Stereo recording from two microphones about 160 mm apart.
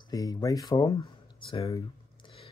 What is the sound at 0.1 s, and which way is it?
Speech, 25° left (ahead or behind).